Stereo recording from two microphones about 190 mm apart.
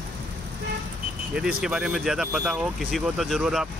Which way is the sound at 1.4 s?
5° right (ahead or behind).